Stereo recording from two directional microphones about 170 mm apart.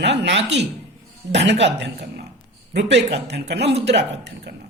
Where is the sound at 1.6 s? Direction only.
80° right.